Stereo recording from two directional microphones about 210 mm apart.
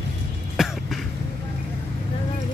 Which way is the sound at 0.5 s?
Centre (ahead or behind).